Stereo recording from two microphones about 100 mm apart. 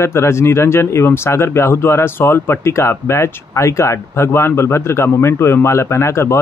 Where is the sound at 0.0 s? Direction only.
25° left (ahead or behind).